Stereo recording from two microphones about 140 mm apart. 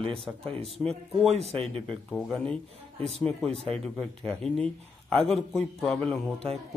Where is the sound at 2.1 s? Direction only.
5° left (ahead or behind).